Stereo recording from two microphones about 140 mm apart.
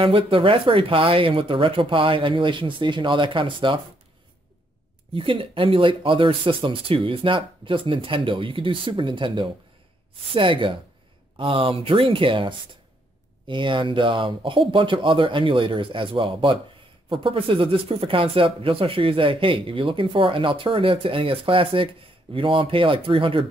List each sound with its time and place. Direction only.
0.0 s speech: 40° right (ahead or behind)
5.1 s speech: 40° right (ahead or behind)